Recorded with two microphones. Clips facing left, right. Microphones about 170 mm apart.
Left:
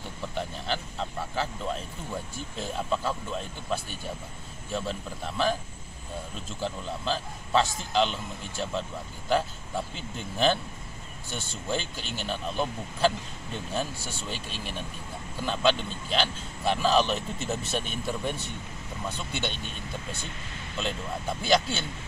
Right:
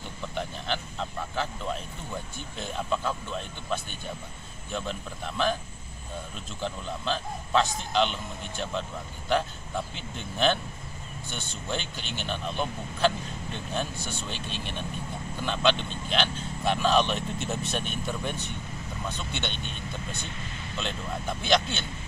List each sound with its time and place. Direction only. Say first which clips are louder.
0.3 s speech: even; centre (ahead or behind)
6.6 s speech: even; 5° left (ahead or behind)
10.1 s speech: left 1 dB; 5° left (ahead or behind)
11.8 s speech: even; 40° left (ahead or behind)
12.3 s speech: left 1 dB; 5° left (ahead or behind)